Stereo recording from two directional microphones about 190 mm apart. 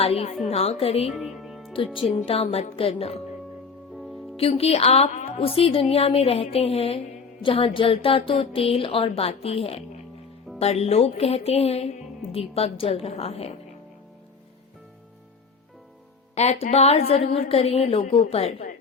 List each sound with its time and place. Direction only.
0.0 s music: 30° left (ahead or behind)
1.1 s music: centre (ahead or behind)
1.7 s speech: 25° left (ahead or behind)
2.2 s music: 30° left (ahead or behind)
4.4 s music: 30° left (ahead or behind)
5.5 s music: 30° left (ahead or behind)
7.4 s speech: 30° left (ahead or behind)
10.6 s music: 35° left (ahead or behind)
16.3 s music: 35° left (ahead or behind)